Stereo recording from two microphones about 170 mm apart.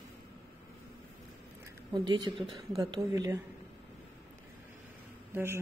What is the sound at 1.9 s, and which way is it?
Speech, 25° right (ahead or behind).